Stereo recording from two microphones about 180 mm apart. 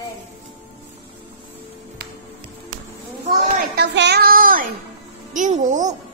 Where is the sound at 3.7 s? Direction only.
70° right (ahead or behind); by 5.9 s 40° right (ahead or behind).